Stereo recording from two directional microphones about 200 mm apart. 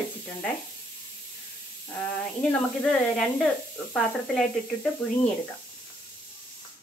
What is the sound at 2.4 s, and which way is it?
Speech, 5° left (ahead or behind).